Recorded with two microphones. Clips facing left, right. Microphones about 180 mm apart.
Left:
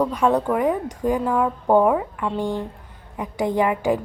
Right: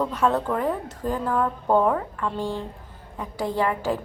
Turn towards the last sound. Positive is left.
turn(degrees=15)  # may be behind; listen again after turning